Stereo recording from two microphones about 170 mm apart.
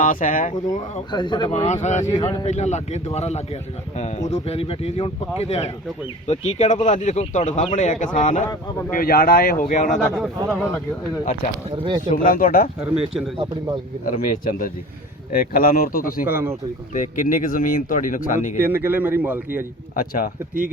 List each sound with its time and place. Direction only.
0.0 s speech: 50° left (ahead or behind)
1.1 s speech: 25° left (ahead or behind)
1.5 s speech: 45° left (ahead or behind)
8.9 s speech: 60° left (ahead or behind)
10.2 s a man's voice: 15° right (ahead or behind)
11.8 s speech: 25° right (ahead or behind)
12.1 s speech: 55° left (ahead or behind)
12.8 s speech: 5° right (ahead or behind)
13.3 s speech: 30° right (ahead or behind)
14.0 s speech: 55° left (ahead or behind)
16.2 s a man's voice: 15° right (ahead or behind)
16.9 s speech: 50° left (ahead or behind)
18.5 s a man's voice: 10° right (ahead or behind)
20.0 s speech: 60° left (ahead or behind)